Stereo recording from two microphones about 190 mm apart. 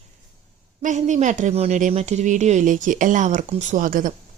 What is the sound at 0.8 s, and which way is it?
Speech, 40° right (ahead or behind).